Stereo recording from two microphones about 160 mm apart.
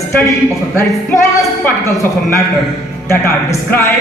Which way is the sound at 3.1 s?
15° left (ahead or behind).